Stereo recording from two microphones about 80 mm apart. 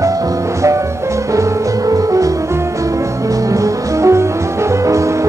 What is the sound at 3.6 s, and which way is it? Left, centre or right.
Music, right.